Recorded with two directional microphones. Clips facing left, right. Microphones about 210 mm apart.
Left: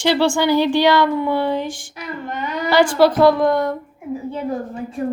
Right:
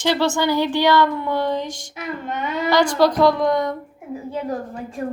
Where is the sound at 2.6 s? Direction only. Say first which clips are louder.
Left 3 dB; 10° left (ahead or behind).